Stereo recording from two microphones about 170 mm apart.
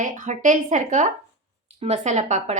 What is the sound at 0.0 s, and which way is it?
Speech, 50° right (ahead or behind).